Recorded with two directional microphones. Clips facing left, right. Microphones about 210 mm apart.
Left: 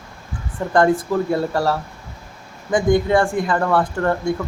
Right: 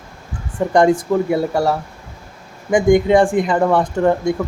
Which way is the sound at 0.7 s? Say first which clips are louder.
Right 2 dB; 15° right (ahead or behind).